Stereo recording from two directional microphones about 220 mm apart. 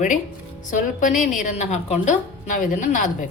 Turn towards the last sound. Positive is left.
turn(degrees=35)  # may be behind; listen again after turning